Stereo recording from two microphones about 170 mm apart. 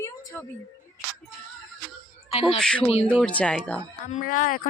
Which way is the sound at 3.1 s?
5° left (ahead or behind).